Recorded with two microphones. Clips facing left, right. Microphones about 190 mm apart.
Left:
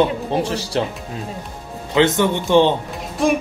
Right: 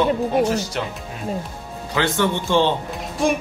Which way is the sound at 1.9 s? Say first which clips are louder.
Left 5 dB; 20° left (ahead or behind).